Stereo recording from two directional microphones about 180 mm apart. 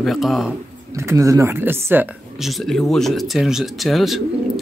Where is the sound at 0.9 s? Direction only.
15° right (ahead or behind).